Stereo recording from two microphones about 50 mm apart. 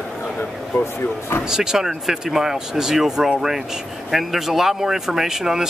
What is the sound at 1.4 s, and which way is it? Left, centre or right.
Speech, centre.